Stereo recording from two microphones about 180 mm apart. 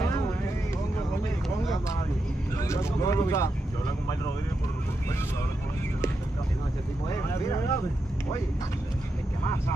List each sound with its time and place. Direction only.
2.6 s vehicle: 15° left (ahead or behind)
7.1 s speech: 15° left (ahead or behind)